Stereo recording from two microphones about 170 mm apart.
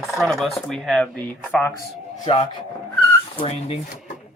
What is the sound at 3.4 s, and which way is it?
Speech, 35° left (ahead or behind).